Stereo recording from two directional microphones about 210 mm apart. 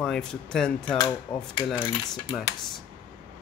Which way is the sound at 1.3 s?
20° left (ahead or behind).